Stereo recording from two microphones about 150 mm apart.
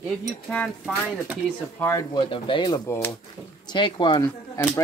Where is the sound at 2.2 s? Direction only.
35° left (ahead or behind).